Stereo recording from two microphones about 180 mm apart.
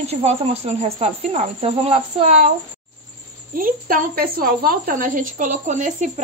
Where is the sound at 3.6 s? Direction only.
50° right (ahead or behind).